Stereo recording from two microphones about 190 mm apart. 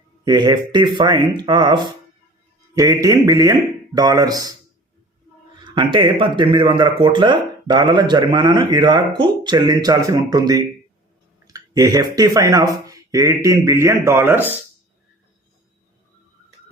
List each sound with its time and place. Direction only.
0.3 s speech: 20° right (ahead or behind)
5.6 s speech: 25° right (ahead or behind)